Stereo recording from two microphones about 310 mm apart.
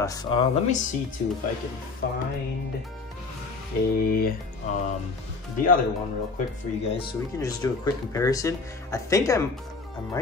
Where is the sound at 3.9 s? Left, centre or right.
Left.